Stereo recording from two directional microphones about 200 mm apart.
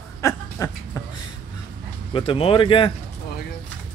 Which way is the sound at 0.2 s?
15° left (ahead or behind).